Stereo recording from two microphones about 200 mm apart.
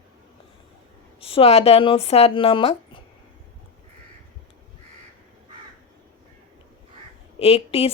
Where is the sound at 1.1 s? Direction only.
30° left (ahead or behind).